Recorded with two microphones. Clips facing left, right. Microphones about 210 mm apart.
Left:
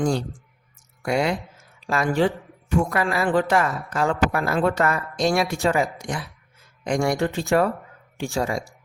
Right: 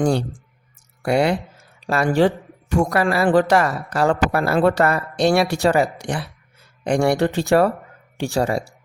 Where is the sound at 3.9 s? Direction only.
70° right (ahead or behind).